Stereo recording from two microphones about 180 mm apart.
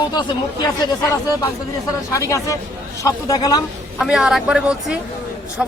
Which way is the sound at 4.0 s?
5° right (ahead or behind).